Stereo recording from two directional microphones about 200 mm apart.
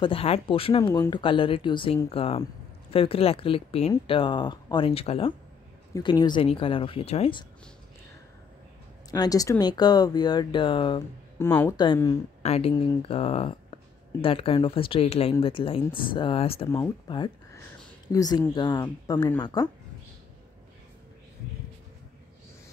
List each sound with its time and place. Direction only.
0.0 s speech: 30° left (ahead or behind)
0.8 s speech: 10° left (ahead or behind)
1.1 s speech: 25° left (ahead or behind)
9.1 s speech: 20° left (ahead or behind)
18.0 s speech: 20° left (ahead or behind)